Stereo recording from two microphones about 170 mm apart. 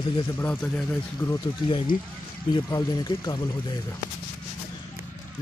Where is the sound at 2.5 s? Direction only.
20° left (ahead or behind).